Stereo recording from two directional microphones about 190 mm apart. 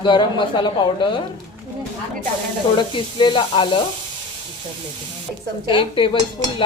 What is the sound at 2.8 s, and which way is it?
Speech, 25° left (ahead or behind).